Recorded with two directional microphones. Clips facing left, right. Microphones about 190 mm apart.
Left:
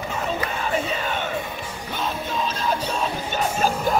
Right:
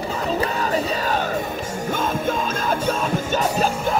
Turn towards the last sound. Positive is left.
turn(degrees=-45)  # may be behind; listen again after turning